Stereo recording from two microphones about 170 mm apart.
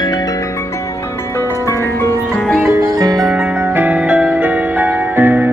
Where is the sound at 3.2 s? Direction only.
5° right (ahead or behind).